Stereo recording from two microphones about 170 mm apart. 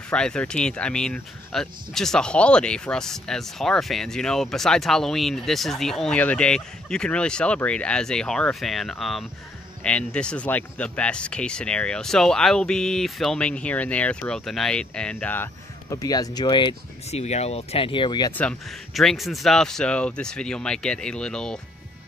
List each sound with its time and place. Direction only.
0.1 s speech: 5° left (ahead or behind); by 16.7 s 25° left (ahead or behind)
17.1 s speech: 40° left (ahead or behind)
18.3 s speech: 5° left (ahead or behind)